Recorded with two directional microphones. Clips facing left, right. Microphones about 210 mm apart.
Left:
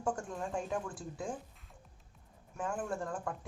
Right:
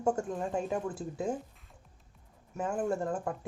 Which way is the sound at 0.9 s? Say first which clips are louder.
Right 7 dB; 25° right (ahead or behind).